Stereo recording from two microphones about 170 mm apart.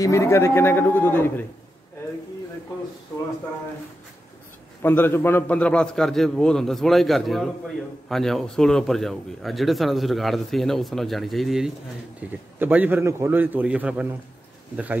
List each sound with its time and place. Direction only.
0.0 s speech: 15° left (ahead or behind)
4.8 s a man's voice: 10° left (ahead or behind); by 14.0 s 5° right (ahead or behind)